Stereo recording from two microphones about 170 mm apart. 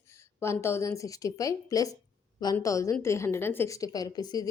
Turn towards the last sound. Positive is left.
turn(degrees=25)  # may be behind; listen again after turning